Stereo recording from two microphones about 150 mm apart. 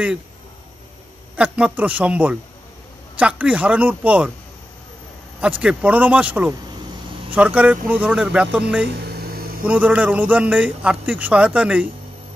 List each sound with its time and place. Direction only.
1.3 s a man's voice: 10° right (ahead or behind)
5.6 s a man's voice: 5° right (ahead or behind)
9.0 s a sound: 90° right
9.7 s a man's voice: 10° right (ahead or behind)